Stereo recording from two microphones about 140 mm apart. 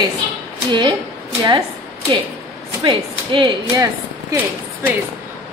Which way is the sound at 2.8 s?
35° right (ahead or behind).